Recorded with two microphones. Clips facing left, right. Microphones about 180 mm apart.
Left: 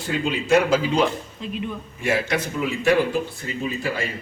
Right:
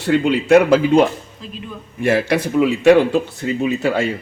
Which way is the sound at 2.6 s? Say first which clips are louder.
Right 8 dB; 75° right (ahead or behind).